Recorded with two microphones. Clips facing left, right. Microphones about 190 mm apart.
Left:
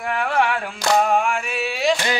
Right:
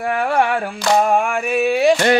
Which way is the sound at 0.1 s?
45° right (ahead or behind).